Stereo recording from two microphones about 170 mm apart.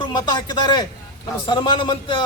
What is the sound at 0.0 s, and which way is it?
A man's voice, 25° left (ahead or behind).